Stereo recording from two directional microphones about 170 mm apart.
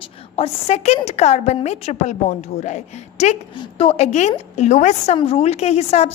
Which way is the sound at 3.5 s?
30° left (ahead or behind).